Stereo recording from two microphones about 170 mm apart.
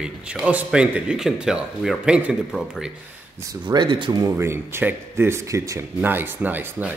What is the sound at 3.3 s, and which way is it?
Speech, 20° right (ahead or behind).